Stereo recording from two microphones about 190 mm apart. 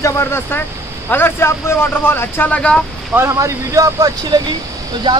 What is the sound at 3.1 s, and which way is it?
Speech, 15° right (ahead or behind).